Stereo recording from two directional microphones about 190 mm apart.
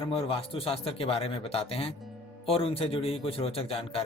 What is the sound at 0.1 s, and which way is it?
A man's voice, 30° left (ahead or behind).